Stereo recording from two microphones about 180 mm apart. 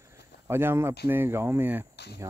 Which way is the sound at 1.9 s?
65° left (ahead or behind).